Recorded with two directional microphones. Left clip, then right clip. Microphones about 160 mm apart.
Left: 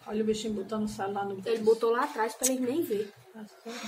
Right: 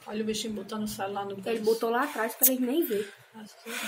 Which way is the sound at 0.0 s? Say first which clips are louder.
Left 2 dB; 55° left (ahead or behind).